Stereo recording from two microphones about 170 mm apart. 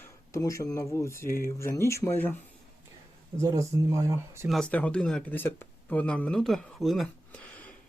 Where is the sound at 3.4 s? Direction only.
15° right (ahead or behind).